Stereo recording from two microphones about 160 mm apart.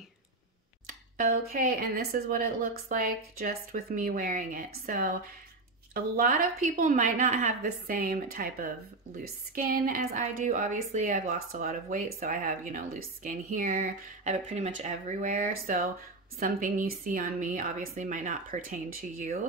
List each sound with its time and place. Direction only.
1.1 s speech: 60° right (ahead or behind)
7.6 s speech: 65° right (ahead or behind)